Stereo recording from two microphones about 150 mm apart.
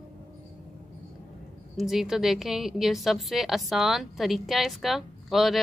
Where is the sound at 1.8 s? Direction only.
Centre (ahead or behind).